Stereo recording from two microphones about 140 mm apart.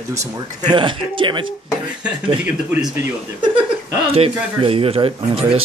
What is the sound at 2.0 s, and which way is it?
Speech, 10° right (ahead or behind).